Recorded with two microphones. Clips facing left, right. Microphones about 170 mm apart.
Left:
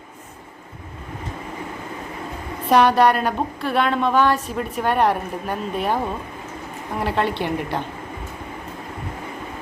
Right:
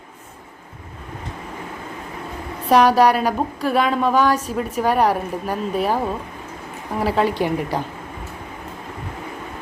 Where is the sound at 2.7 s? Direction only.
10° right (ahead or behind).